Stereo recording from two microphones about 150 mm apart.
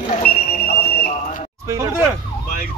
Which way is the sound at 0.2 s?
90° left.